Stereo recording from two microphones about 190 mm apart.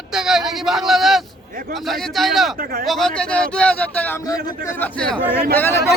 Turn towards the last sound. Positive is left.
turn(degrees=10)  # may be behind; listen again after turning